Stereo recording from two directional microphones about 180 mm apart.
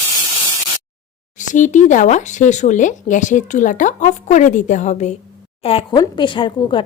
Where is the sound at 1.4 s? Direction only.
45° left (ahead or behind).